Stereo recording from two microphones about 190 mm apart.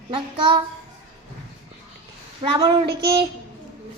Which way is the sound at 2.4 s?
30° right (ahead or behind).